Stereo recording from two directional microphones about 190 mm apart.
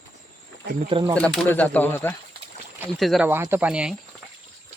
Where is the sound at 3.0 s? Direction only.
Centre (ahead or behind).